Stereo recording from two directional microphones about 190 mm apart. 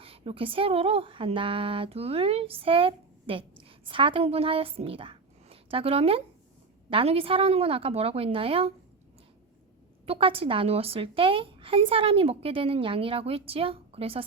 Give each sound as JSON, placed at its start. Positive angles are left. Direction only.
{"t": 0.0, "sound": "a woman's voice", "side_deg": -30}
{"t": 10.1, "sound": "a woman's voice", "side_deg": -30}